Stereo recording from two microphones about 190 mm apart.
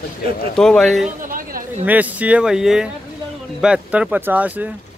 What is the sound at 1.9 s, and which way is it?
Speech, 10° right (ahead or behind).